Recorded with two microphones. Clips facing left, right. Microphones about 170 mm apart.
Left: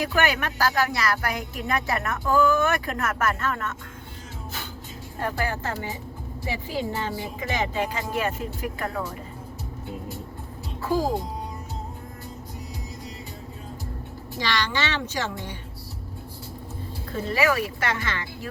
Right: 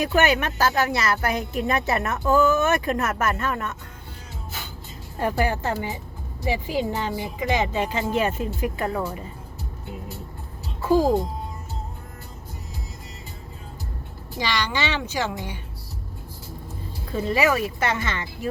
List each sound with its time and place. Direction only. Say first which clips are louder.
0.0 s speech: right 4 dB; 20° right (ahead or behind)
5.2 s speech: right 5 dB; 20° right (ahead or behind)
14.3 s speech: right 1 dB; 15° right (ahead or behind)
17.2 s speech: right 2 dB; 20° right (ahead or behind)